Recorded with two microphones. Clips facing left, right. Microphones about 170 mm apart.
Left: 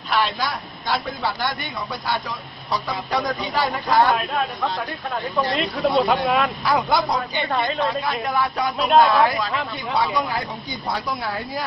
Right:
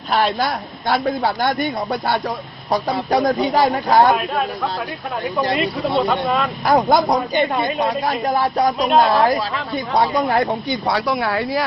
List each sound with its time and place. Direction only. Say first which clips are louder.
0.1 s a man's voice: right 4 dB; 50° right (ahead or behind)
5.5 s speech: left 1 dB; centre (ahead or behind)
6.6 s a man's voice: right 5 dB; 45° right (ahead or behind)
7.5 s speech: right 2 dB; 15° right (ahead or behind)
8.0 s speech: right 4 dB; 40° right (ahead or behind)
9.9 s speech: right 6 dB; 60° right (ahead or behind); by 11.6 s 75° right (ahead or behind)